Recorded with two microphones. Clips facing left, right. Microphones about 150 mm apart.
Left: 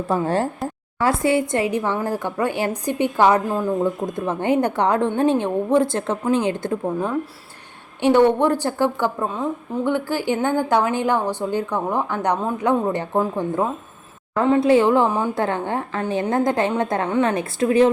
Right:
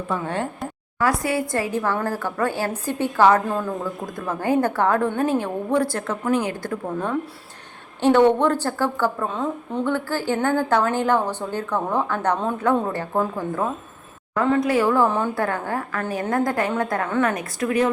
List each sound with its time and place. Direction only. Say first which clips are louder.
0.1 s a woman's voice: left 6 dB; 35° left (ahead or behind)
8.0 s a woman's voice: left 1 dB; 10° left (ahead or behind)